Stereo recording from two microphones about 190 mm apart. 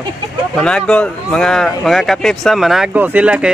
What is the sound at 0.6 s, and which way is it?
Speech, 5° left (ahead or behind).